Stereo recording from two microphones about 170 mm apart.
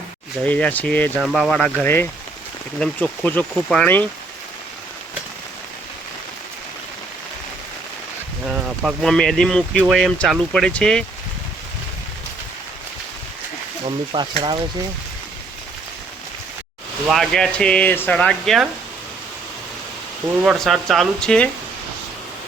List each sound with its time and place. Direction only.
0.4 s speech: 10° left (ahead or behind)
8.4 s speech: 5° right (ahead or behind)
13.8 s speech: 30° right (ahead or behind)
17.1 s speech: centre (ahead or behind)
20.4 s speech: centre (ahead or behind)